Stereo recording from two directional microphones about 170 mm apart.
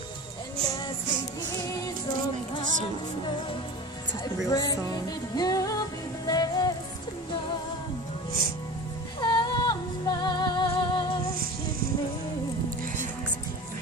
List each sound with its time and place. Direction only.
4.2 s music: 25° left (ahead or behind)
9.2 s music: 25° left (ahead or behind)